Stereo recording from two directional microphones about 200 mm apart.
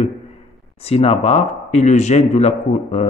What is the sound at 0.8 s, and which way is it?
A man's voice, 30° left (ahead or behind).